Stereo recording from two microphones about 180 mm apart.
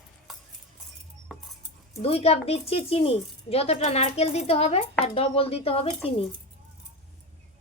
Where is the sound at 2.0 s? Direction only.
35° left (ahead or behind).